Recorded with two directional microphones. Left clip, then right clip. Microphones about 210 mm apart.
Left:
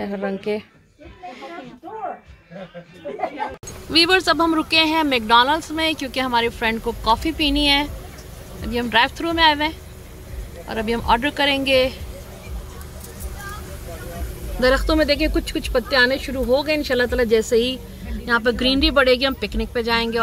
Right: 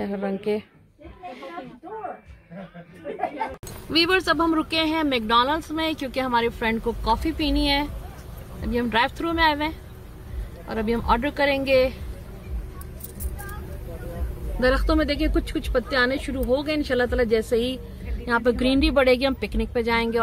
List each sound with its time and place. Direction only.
0.0 s speech: centre (ahead or behind)
3.9 s speech: centre (ahead or behind)
14.6 s speech: centre (ahead or behind)